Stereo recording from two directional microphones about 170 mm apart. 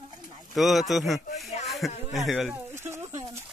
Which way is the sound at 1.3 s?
40° left (ahead or behind).